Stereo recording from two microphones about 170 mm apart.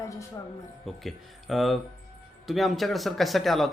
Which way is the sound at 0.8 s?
Centre (ahead or behind).